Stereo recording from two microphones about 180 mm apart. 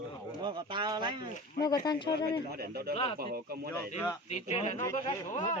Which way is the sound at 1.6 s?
25° left (ahead or behind).